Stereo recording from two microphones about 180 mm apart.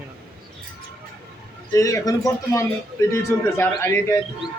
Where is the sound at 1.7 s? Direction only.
20° left (ahead or behind).